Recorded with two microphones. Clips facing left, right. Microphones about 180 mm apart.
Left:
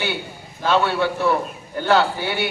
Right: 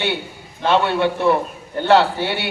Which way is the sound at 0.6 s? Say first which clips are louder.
Right 2 dB; 25° right (ahead or behind).